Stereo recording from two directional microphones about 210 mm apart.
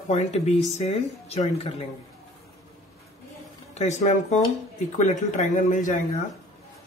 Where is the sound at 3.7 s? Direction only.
35° left (ahead or behind).